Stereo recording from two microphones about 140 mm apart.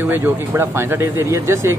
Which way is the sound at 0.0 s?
15° right (ahead or behind).